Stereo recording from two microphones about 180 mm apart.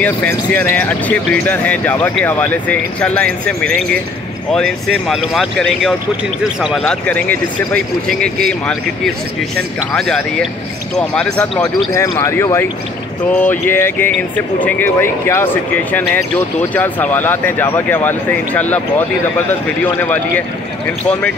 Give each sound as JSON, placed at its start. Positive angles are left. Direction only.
{"t": 0.0, "sound": "speech", "side_deg": 10}
{"t": 9.9, "sound": "speech", "side_deg": 5}
{"t": 11.6, "sound": "speech", "side_deg": 15}